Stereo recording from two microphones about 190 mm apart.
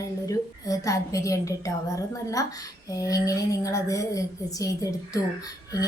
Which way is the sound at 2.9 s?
20° left (ahead or behind).